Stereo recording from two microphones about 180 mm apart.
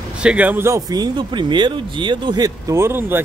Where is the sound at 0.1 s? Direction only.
5° right (ahead or behind).